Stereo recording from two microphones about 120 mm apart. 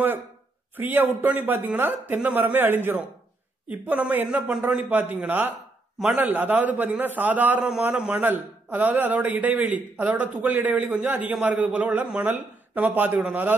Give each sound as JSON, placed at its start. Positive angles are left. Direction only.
{"t": 0.7, "sound": "a man's voice", "side_deg": -15}